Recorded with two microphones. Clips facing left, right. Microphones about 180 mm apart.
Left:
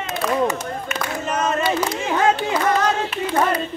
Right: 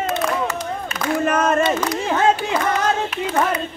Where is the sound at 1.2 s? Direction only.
55° right (ahead or behind).